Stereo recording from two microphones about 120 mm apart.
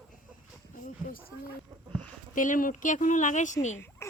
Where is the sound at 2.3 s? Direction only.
90° left.